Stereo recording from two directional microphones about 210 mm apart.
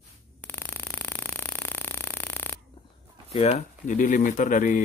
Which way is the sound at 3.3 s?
30° left (ahead or behind).